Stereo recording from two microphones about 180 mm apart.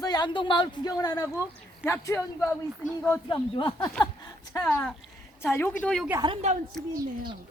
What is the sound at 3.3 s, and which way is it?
Speech, 25° left (ahead or behind).